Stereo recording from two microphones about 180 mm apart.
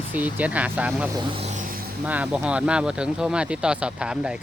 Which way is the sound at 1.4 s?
40° right (ahead or behind).